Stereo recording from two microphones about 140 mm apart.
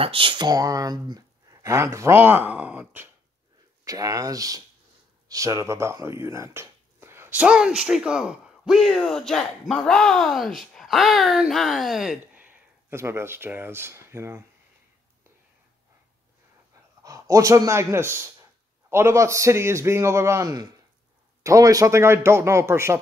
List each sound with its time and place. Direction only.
0.0 s speech: 40° right (ahead or behind); by 3.1 s 15° right (ahead or behind)
3.8 s speech: 25° right (ahead or behind)
17.0 s speech: 25° right (ahead or behind)